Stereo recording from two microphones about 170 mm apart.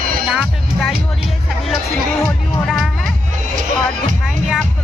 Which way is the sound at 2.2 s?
Centre (ahead or behind).